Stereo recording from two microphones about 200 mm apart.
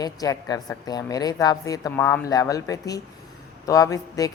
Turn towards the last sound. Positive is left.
turn(degrees=15)  # may be behind; listen again after turning